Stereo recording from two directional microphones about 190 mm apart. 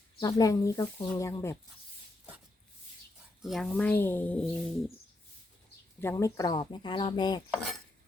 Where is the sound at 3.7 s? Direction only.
10° left (ahead or behind).